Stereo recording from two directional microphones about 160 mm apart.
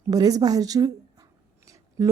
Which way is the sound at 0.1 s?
25° right (ahead or behind).